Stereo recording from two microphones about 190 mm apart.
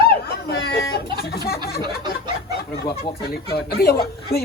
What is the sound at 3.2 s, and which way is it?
Speech, 55° left (ahead or behind).